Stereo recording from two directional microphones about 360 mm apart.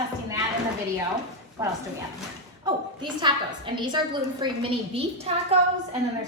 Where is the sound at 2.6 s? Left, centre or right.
Centre.